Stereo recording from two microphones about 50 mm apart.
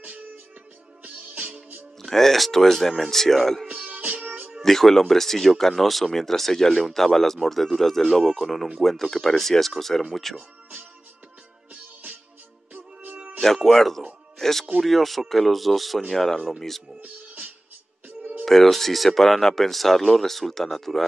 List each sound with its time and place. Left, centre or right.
0.0 s music: right
2.0 s speech: centre
3.6 s music: right
4.6 s speech: centre
11.7 s music: right
13.7 s speech: centre
17.0 s music: right
18.4 s speech: centre